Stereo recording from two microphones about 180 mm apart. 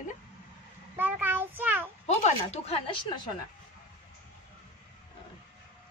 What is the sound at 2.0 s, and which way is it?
Speech, 40° left (ahead or behind).